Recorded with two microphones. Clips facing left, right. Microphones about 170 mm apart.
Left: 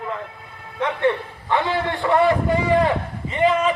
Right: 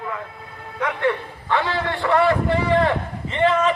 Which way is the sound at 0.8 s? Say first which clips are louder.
Left 2 dB; 20° left (ahead or behind).